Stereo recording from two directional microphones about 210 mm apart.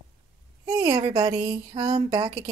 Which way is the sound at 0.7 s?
25° right (ahead or behind).